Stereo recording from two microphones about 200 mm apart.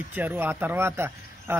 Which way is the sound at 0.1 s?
10° right (ahead or behind).